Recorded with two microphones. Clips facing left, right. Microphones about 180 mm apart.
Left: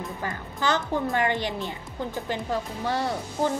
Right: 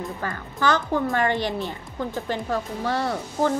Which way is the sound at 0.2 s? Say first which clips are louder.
Right 4 dB; 20° left (ahead or behind).